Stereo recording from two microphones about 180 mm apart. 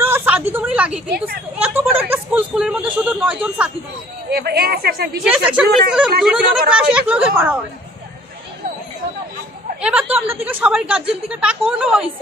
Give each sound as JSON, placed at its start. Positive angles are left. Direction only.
{"t": 0.0, "sound": "a sound", "side_deg": -10}
{"t": 1.6, "sound": "speech", "side_deg": -10}
{"t": 4.3, "sound": "a woman's voice", "side_deg": -60}
{"t": 5.3, "sound": "a woman's voice", "side_deg": -5}
{"t": 9.8, "sound": "speech", "side_deg": -5}